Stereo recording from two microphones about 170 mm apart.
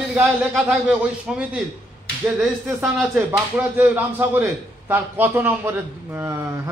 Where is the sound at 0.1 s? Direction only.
5° right (ahead or behind).